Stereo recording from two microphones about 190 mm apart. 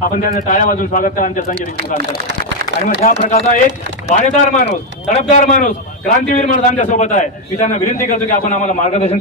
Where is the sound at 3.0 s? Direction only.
35° left (ahead or behind).